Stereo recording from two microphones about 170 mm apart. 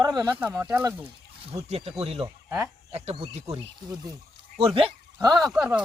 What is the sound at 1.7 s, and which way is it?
Speech, 40° right (ahead or behind).